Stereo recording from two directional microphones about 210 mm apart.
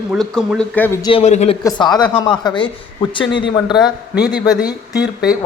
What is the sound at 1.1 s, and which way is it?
Speech, 30° left (ahead or behind).